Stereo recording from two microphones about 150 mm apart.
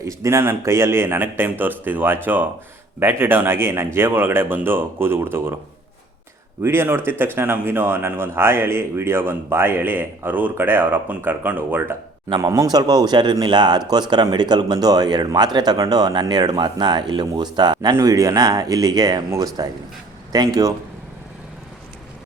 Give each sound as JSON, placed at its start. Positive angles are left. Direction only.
{"t": 0.0, "sound": "speech", "side_deg": -20}
{"t": 6.6, "sound": "speech", "side_deg": -15}